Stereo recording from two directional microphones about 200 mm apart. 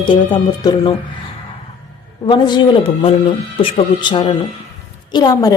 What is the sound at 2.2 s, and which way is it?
A woman's voice, 20° left (ahead or behind).